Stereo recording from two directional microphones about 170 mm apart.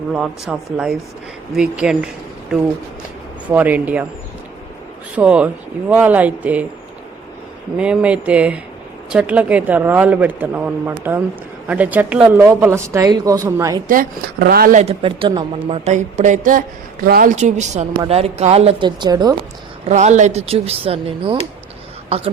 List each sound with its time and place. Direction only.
0.1 s a woman's voice: 5° right (ahead or behind)
3.5 s a woman's voice: 10° right (ahead or behind)
5.1 s a woman's voice: 5° right (ahead or behind)
7.8 s a woman's voice: 5° right (ahead or behind)
13.8 s a woman's voice: 55° right (ahead or behind)
14.8 s speech: 35° right (ahead or behind); by 17.3 s 60° right (ahead or behind)
17.3 s speech: 45° right (ahead or behind); by 19.4 s 25° right (ahead or behind)
19.9 s speech: 45° right (ahead or behind)